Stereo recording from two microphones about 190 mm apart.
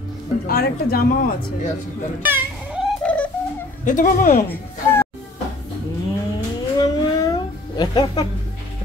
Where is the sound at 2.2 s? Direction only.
10° right (ahead or behind).